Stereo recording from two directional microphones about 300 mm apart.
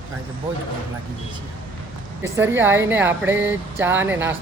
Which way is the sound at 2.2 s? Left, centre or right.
Centre.